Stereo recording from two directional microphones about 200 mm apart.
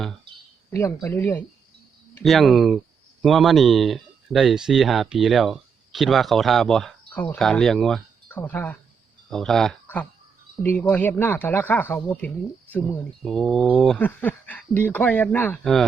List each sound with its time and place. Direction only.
0.3 s a sound: 25° right (ahead or behind)
0.7 s speech: 15° left (ahead or behind)
2.2 s speech: centre (ahead or behind)